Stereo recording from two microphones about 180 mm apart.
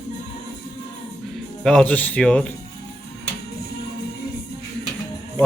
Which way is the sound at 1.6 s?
5° left (ahead or behind).